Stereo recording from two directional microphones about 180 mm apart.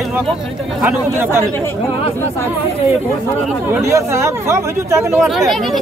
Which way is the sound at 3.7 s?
15° right (ahead or behind).